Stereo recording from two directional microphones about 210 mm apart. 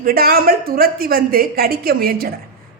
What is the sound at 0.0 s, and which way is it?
A woman's voice, 45° right (ahead or behind).